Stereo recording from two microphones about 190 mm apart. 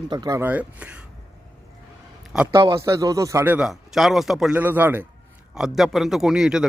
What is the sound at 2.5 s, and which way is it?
A man's voice, 25° right (ahead or behind).